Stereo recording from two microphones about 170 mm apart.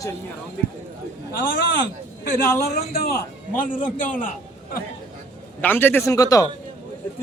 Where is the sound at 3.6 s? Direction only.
50° left (ahead or behind).